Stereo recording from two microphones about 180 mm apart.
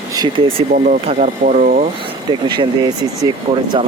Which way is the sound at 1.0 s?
45° right (ahead or behind).